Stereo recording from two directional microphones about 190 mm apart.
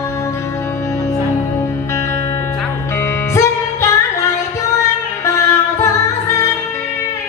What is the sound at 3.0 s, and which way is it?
Music, 15° left (ahead or behind).